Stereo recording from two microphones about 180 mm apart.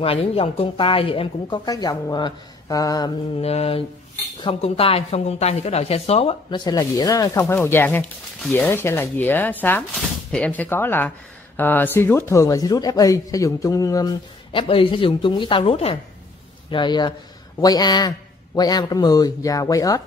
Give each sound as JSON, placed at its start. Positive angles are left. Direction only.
{"t": 0.0, "sound": "speech", "side_deg": 30}
{"t": 3.3, "sound": "speech", "side_deg": 35}
{"t": 6.6, "sound": "speech", "side_deg": 20}